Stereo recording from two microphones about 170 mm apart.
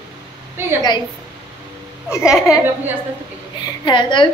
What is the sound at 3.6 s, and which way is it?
Speech, 25° left (ahead or behind).